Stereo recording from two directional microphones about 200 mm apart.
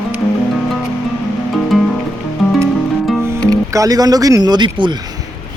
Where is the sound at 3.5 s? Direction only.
15° right (ahead or behind).